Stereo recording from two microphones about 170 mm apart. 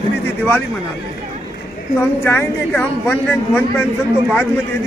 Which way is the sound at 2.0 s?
15° left (ahead or behind).